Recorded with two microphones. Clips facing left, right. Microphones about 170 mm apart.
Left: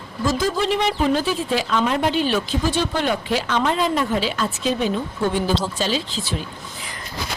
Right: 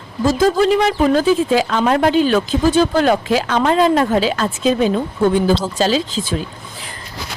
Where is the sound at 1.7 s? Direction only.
50° right (ahead or behind).